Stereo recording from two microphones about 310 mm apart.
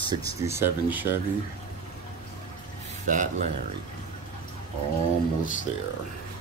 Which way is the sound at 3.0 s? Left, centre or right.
Right.